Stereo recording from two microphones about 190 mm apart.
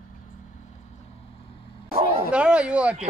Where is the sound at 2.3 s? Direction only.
5° right (ahead or behind).